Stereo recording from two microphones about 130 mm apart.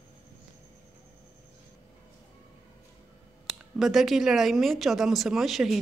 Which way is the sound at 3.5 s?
Centre (ahead or behind).